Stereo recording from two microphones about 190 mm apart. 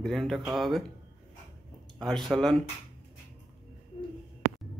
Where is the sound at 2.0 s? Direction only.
Centre (ahead or behind).